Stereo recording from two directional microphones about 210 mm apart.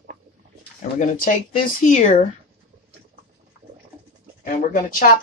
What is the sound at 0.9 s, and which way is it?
Speech, 40° left (ahead or behind).